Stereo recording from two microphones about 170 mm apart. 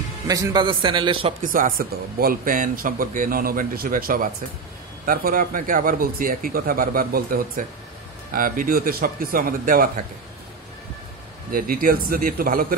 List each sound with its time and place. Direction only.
0.3 s a man's voice: 20° right (ahead or behind)
1.4 s speech: 55° right (ahead or behind)
11.5 s speech: 60° right (ahead or behind)